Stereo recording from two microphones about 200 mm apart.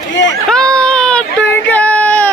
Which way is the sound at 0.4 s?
5° left (ahead or behind).